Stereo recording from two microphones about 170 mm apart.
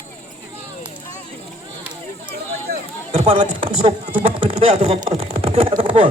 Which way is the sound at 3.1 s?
35° right (ahead or behind).